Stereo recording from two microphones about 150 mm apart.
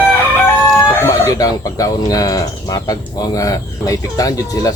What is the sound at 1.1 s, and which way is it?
Speech, 20° left (ahead or behind).